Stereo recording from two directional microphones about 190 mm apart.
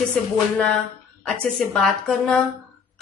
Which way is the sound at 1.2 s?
5° left (ahead or behind).